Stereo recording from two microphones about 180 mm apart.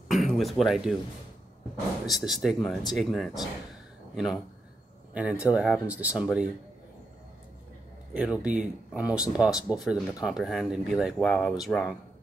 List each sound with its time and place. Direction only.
0.1 s speech: centre (ahead or behind)
2.0 s speech: centre (ahead or behind)
8.1 s speech: 5° right (ahead or behind)